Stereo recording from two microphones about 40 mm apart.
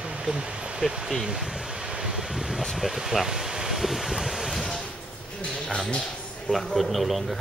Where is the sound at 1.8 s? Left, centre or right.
Right.